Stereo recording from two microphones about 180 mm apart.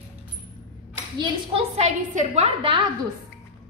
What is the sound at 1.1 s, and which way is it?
Speech, 25° right (ahead or behind).